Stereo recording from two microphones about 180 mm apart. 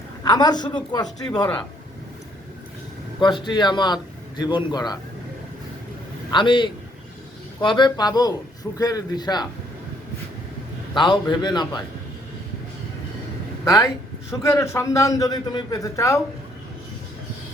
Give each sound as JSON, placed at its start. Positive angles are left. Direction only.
{"t": 0.3, "sound": "a man's voice", "side_deg": 20}
{"t": 3.2, "sound": "a man's voice", "side_deg": 25}
{"t": 6.3, "sound": "a man's voice", "side_deg": 25}
{"t": 10.9, "sound": "a man's voice", "side_deg": 25}
{"t": 13.7, "sound": "a man's voice", "side_deg": 15}